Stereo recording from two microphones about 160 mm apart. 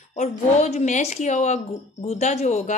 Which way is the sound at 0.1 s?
45° left (ahead or behind).